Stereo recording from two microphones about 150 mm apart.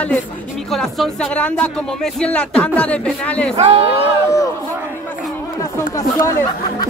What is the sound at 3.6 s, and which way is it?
Speech, 40° right (ahead or behind).